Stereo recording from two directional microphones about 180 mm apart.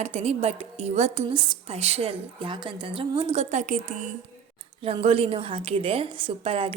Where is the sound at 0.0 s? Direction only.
40° right (ahead or behind).